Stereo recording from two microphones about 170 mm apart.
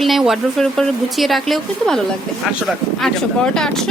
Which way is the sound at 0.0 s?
Centre (ahead or behind).